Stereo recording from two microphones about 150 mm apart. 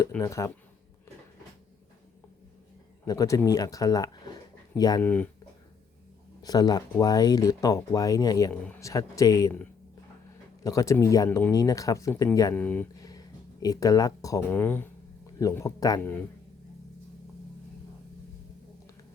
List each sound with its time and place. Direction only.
0.2 s speech: 20° left (ahead or behind)
3.1 s speech: 25° left (ahead or behind)
5.0 s speech: 10° left (ahead or behind)
6.4 s speech: 25° left (ahead or behind)
10.6 s speech: 20° left (ahead or behind)
11.3 s speech: 10° left (ahead or behind)
11.5 s speech: 20° left (ahead or behind)
12.5 s speech: 10° left (ahead or behind)
13.0 s a sound: 25° left (ahead or behind)
14.5 s speech: 15° left (ahead or behind)